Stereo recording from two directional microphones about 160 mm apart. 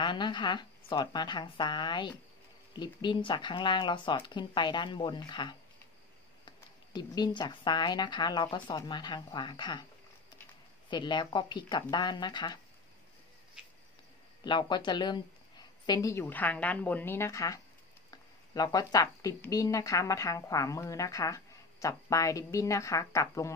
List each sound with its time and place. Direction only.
0.0 s speech: 30° left (ahead or behind)
10.9 s speech: 30° left (ahead or behind)
14.4 s a woman's voice: 30° left (ahead or behind)